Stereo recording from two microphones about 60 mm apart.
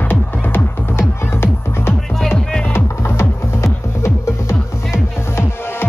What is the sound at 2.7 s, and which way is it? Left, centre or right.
Music, left.